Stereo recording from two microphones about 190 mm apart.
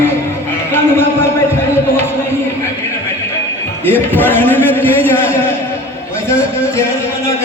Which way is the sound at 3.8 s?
10° left (ahead or behind).